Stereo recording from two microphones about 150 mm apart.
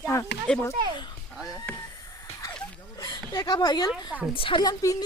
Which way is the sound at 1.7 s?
10° left (ahead or behind).